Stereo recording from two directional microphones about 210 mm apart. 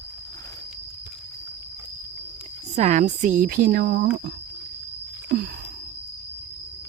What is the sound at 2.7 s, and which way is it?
A woman's voice, 35° right (ahead or behind).